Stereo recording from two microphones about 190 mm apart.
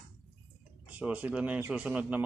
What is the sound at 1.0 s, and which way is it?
Speech, 5° right (ahead or behind).